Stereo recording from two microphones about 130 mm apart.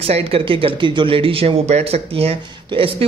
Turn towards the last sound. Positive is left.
turn(degrees=-45)  # may be behind; listen again after turning